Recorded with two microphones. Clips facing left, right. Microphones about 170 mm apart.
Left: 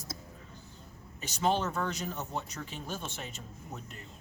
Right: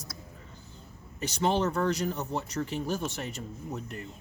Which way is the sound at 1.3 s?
70° right (ahead or behind).